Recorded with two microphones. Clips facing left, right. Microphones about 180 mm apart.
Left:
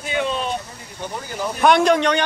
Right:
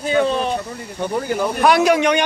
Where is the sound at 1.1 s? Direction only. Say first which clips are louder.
Right 7 dB; 55° right (ahead or behind).